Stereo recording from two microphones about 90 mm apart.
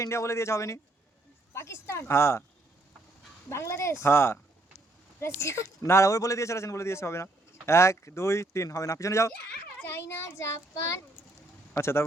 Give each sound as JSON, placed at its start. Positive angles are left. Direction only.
{"t": 0.0, "sound": "speech", "side_deg": 35}
{"t": 3.5, "sound": "speech", "side_deg": 30}
{"t": 9.9, "sound": "speech", "side_deg": 25}